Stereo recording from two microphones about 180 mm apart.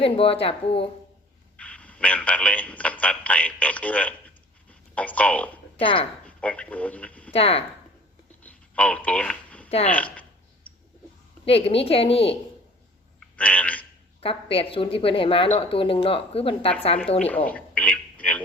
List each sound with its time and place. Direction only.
0.0 s speech: 30° left (ahead or behind)
1.5 s a man's voice: 5° left (ahead or behind)
5.8 s speech: 30° left (ahead or behind)
6.2 s speech: 5° left (ahead or behind)
7.3 s speech: 30° left (ahead or behind)
8.4 s a sound: 5° left (ahead or behind)
9.6 s speech: 35° left (ahead or behind)
9.9 s a man's voice: 10° left (ahead or behind)
11.4 s speech: 30° left (ahead or behind)
13.1 s speech: 5° left (ahead or behind)
14.2 s speech: 30° left (ahead or behind)
17.2 s a man's voice: 10° left (ahead or behind)